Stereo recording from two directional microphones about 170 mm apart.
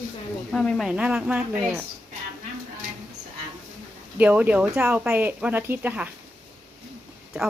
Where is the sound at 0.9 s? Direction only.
5° right (ahead or behind).